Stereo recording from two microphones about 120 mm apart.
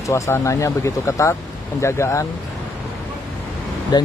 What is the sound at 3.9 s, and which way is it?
Speech, 35° left (ahead or behind).